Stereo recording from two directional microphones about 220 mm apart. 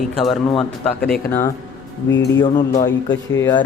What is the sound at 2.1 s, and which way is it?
Speech, 55° left (ahead or behind).